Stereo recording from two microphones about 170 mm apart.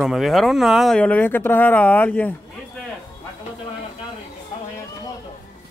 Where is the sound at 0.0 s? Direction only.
Centre (ahead or behind).